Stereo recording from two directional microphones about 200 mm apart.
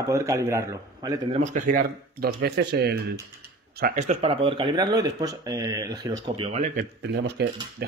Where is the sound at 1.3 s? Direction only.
35° right (ahead or behind); by 3.1 s 55° right (ahead or behind).